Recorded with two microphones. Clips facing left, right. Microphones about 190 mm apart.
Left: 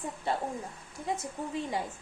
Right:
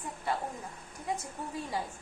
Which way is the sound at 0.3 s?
25° left (ahead or behind).